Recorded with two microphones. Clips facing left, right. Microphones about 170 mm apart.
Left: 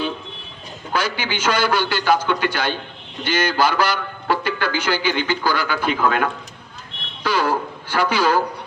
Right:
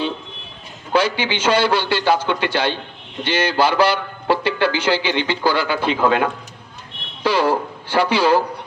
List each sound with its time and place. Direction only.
0.9 s a man's voice: 30° right (ahead or behind)